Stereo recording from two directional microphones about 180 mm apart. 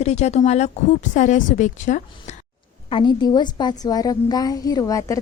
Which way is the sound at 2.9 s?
25° left (ahead or behind).